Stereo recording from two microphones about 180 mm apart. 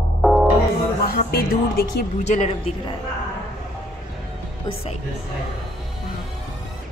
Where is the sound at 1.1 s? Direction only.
55° left (ahead or behind).